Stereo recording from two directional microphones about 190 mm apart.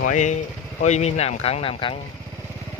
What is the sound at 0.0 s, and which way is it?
Speech, 40° left (ahead or behind).